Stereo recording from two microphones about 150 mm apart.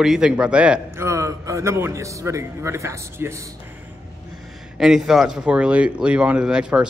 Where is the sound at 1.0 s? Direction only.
20° right (ahead or behind).